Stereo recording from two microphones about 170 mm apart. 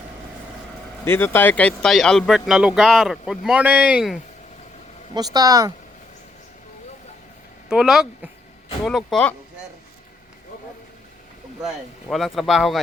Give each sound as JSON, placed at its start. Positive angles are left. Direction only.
{"t": 1.0, "sound": "speech", "side_deg": 15}
{"t": 5.1, "sound": "speech", "side_deg": -25}
{"t": 7.7, "sound": "speech", "side_deg": -5}
{"t": 11.6, "sound": "speech", "side_deg": 0}